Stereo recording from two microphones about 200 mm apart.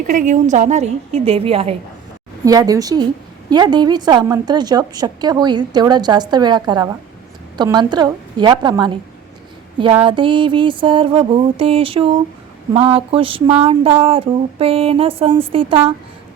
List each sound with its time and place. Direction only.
0.1 s a woman's voice: 40° right (ahead or behind)
2.4 s a woman's voice: 20° right (ahead or behind)
10.0 s a woman's voice: 25° right (ahead or behind)